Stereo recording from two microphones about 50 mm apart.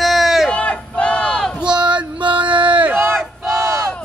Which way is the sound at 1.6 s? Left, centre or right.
Centre.